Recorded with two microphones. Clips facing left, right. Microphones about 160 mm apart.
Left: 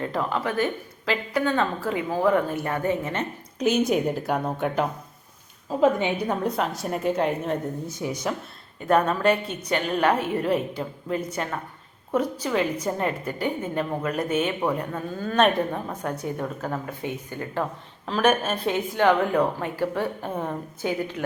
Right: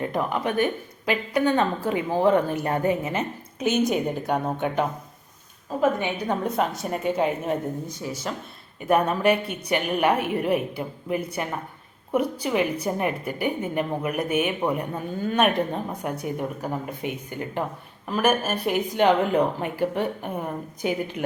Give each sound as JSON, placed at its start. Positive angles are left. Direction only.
{"t": 0.0, "sound": "a woman's voice", "side_deg": -15}
{"t": 3.0, "sound": "a woman's voice", "side_deg": -5}
{"t": 5.8, "sound": "a woman's voice", "side_deg": 20}
{"t": 6.2, "sound": "a woman's voice", "side_deg": 0}
{"t": 8.0, "sound": "speech", "side_deg": 15}
{"t": 8.9, "sound": "a woman's voice", "side_deg": -10}
{"t": 18.9, "sound": "a woman's voice", "side_deg": -20}